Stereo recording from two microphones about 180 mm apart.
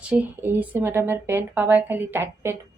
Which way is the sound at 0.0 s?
5° right (ahead or behind).